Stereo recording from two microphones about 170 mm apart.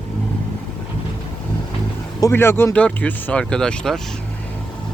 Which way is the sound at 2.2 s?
15° left (ahead or behind).